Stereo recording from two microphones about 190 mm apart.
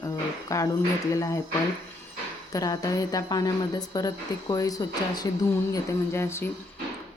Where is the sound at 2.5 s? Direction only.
20° left (ahead or behind).